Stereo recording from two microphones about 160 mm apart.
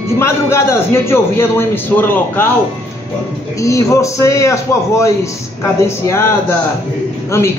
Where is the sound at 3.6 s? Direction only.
20° left (ahead or behind).